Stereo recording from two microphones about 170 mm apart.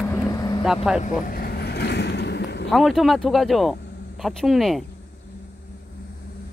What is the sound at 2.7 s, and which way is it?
Speech, centre (ahead or behind).